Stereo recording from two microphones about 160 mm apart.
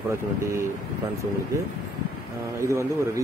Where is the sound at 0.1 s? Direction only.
15° right (ahead or behind).